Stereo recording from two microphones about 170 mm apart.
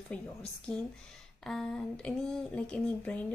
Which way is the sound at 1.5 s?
5° left (ahead or behind).